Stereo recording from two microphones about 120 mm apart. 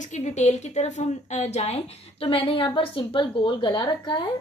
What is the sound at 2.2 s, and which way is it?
A woman's voice, 50° left (ahead or behind).